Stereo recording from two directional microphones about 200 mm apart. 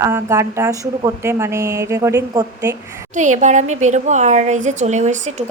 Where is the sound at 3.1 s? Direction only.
40° right (ahead or behind).